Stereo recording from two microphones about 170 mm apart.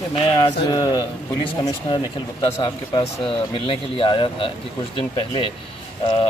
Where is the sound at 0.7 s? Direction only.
25° left (ahead or behind).